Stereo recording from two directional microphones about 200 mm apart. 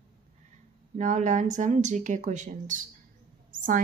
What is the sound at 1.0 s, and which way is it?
Speech, 40° right (ahead or behind).